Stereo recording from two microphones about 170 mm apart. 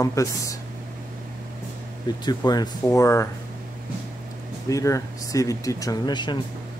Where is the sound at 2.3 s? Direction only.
25° left (ahead or behind).